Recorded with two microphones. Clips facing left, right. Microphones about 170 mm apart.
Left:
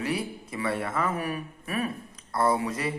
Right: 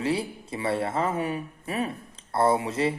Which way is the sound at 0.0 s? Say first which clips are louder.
Right 3 dB; 30° right (ahead or behind).